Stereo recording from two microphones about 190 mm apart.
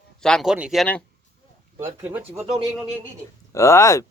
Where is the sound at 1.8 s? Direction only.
15° right (ahead or behind).